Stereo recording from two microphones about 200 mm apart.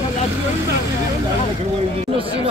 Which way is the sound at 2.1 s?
25° right (ahead or behind).